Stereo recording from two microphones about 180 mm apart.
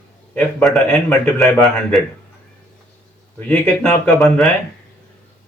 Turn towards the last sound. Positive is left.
turn(degrees=5)  # may be behind; listen again after turning